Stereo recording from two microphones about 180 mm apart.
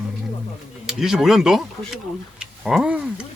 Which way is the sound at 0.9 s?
Centre (ahead or behind).